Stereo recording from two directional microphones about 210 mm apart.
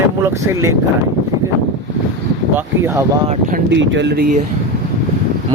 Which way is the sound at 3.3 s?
40° right (ahead or behind).